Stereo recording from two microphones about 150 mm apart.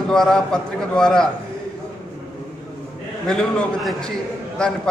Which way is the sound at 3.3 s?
5° left (ahead or behind).